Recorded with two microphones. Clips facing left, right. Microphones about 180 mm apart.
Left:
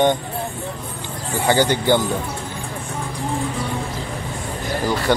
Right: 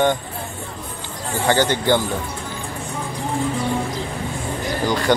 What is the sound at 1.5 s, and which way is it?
Speech, 10° left (ahead or behind).